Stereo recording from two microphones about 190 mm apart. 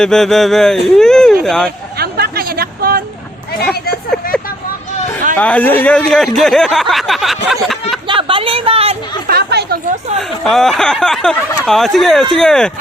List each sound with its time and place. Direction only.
0.0 s speech: 5° left (ahead or behind)
0.9 s a sound: 5° left (ahead or behind)
1.5 s speech: 5° left (ahead or behind)
2.0 s chatter: 55° right (ahead or behind)
5.4 s speech: 10° left (ahead or behind)
8.0 s a sound: 25° right (ahead or behind)
9.2 s chatter: 55° right (ahead or behind)
10.2 s speech: centre (ahead or behind)